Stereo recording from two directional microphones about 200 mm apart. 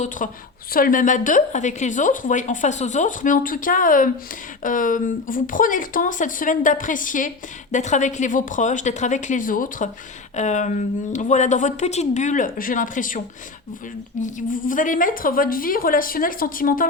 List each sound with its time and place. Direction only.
0.2 s speech: 40° left (ahead or behind)